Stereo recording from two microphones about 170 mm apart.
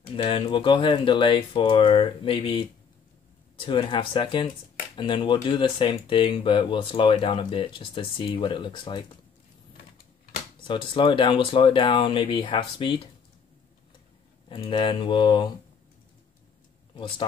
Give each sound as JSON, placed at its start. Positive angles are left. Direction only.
{"t": 0.1, "sound": "speech", "side_deg": 30}
{"t": 10.7, "sound": "speech", "side_deg": 30}
{"t": 14.5, "sound": "speech", "side_deg": 30}